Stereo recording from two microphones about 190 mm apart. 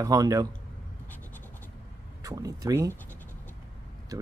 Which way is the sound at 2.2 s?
20° right (ahead or behind).